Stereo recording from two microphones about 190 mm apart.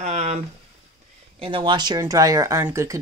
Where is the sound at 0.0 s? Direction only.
35° right (ahead or behind).